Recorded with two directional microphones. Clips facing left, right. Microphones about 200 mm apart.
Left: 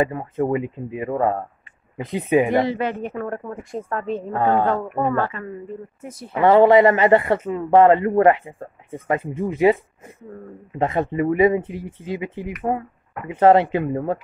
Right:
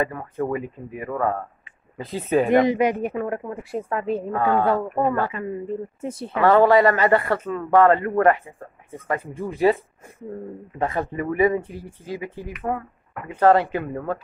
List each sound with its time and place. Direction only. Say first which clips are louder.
0.0 s a man's voice: left 4 dB; 20° left (ahead or behind)
2.5 s speech: right 3 dB; 15° right (ahead or behind)
4.4 s a man's voice: left 3 dB; 20° left (ahead or behind)
4.6 s speech: right 1 dB; 5° right (ahead or behind)
5.9 s speech: right 6 dB; 30° right (ahead or behind)
6.3 s a man's voice: left 3 dB; 15° left (ahead or behind)
10.8 s a man's voice: left 4 dB; 20° left (ahead or behind)